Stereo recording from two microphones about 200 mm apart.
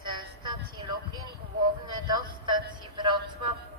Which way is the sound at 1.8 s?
20° right (ahead or behind).